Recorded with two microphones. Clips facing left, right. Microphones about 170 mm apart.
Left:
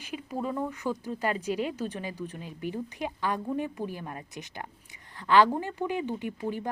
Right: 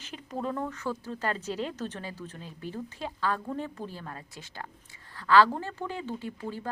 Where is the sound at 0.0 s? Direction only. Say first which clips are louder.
Left 1 dB; 10° left (ahead or behind).